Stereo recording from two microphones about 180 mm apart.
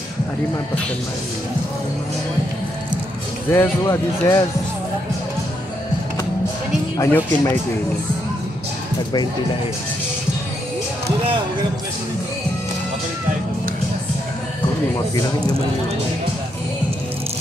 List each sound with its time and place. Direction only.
3.5 s speech: 20° left (ahead or behind)
7.0 s speech: 10° left (ahead or behind)